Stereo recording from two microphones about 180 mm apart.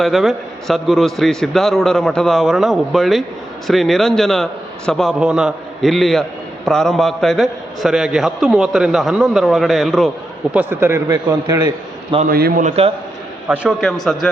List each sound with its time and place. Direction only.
0.0 s a man's voice: centre (ahead or behind)
10.5 s a man's voice: 10° right (ahead or behind)
12.3 s a man's voice: 55° right (ahead or behind)
13.5 s a man's voice: 5° right (ahead or behind)